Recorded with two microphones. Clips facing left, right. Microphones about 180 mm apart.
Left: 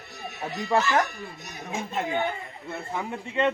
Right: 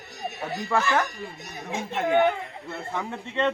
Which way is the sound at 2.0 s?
75° right (ahead or behind).